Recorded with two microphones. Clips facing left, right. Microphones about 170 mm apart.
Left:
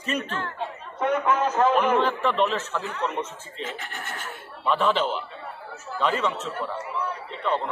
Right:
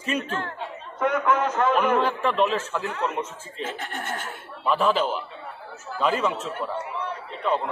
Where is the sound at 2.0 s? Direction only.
5° right (ahead or behind).